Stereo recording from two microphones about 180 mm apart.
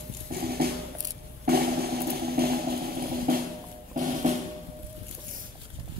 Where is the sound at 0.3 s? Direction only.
60° right (ahead or behind).